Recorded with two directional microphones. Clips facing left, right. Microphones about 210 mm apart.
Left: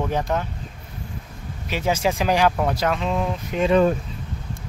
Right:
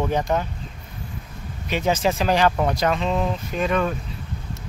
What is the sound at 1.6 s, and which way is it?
Speech, 5° left (ahead or behind).